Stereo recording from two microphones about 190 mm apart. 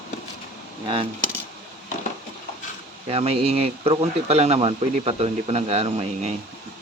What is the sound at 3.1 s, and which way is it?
Speech, 30° right (ahead or behind).